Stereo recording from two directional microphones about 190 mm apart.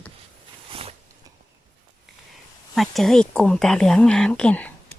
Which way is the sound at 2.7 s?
Centre (ahead or behind).